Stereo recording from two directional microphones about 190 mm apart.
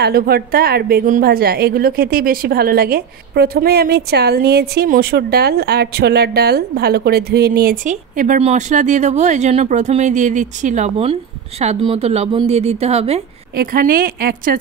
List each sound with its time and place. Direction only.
0.0 s a woman's voice: 55° right (ahead or behind); by 13.2 s 35° right (ahead or behind)
13.6 s a woman's voice: 50° right (ahead or behind)